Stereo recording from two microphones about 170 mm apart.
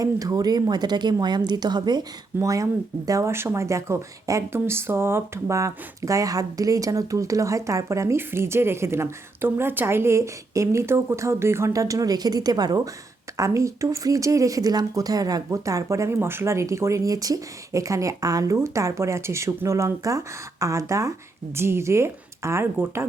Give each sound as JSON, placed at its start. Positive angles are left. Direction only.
{"t": 0.0, "sound": "speech", "side_deg": -20}